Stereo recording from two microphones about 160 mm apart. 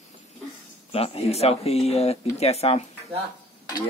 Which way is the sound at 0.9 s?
40° left (ahead or behind).